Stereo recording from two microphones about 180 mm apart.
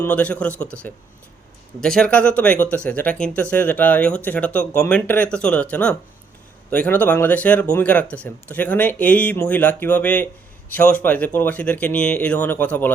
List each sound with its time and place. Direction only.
0.0 s speech: 10° left (ahead or behind)